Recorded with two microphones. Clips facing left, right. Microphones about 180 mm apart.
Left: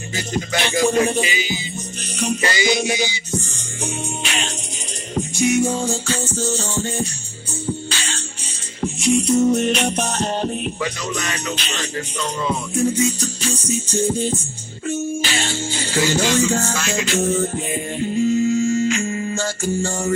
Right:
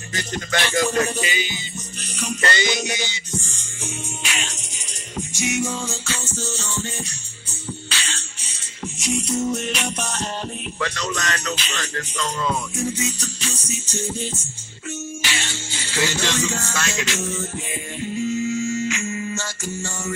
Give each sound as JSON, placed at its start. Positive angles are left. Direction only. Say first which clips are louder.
{"t": 0.6, "sound": "music", "louder": "left 3 dB", "side_deg": 25}
{"t": 1.2, "sound": "speech", "louder": "left 3 dB", "side_deg": 10}
{"t": 3.8, "sound": "music", "louder": "left 6 dB", "side_deg": 35}
{"t": 9.2, "sound": "music", "louder": "left 8 dB", "side_deg": 35}
{"t": 10.8, "sound": "speech", "louder": "left 1 dB", "side_deg": 10}
{"t": 12.7, "sound": "music", "louder": "left 7 dB", "side_deg": 35}